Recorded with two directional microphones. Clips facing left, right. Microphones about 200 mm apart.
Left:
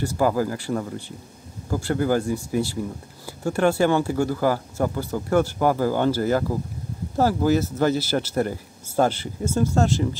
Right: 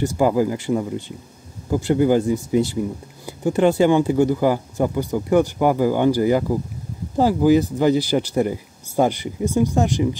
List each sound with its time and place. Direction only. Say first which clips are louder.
0.0 s speech: right 4 dB; 15° right (ahead or behind)